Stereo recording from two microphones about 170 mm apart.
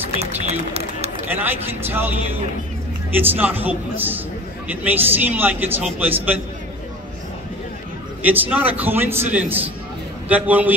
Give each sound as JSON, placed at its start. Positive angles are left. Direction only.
{"t": 0.2, "sound": "speech", "side_deg": -40}
{"t": 1.3, "sound": "a man's voice", "side_deg": -10}
{"t": 3.2, "sound": "a man's voice", "side_deg": -10}
{"t": 8.2, "sound": "a man's voice", "side_deg": -10}